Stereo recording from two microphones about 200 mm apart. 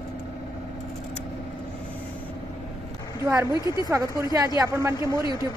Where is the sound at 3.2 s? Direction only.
15° right (ahead or behind).